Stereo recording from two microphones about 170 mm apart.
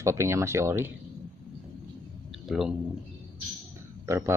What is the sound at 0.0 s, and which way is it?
Speech, 15° right (ahead or behind).